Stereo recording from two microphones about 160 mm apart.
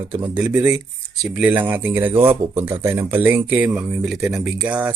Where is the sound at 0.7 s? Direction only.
5° right (ahead or behind).